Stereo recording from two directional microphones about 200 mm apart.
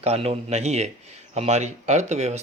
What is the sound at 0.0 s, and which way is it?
Speech, 30° right (ahead or behind).